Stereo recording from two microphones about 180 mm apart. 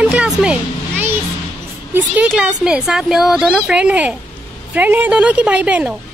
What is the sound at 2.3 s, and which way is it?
A woman's voice, 5° right (ahead or behind).